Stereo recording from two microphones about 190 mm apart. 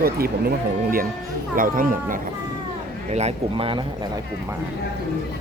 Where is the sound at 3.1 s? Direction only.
35° right (ahead or behind).